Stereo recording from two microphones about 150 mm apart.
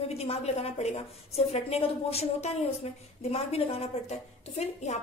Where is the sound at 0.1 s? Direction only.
45° left (ahead or behind).